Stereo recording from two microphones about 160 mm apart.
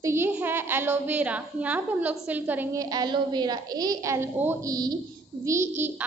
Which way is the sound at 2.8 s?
25° right (ahead or behind).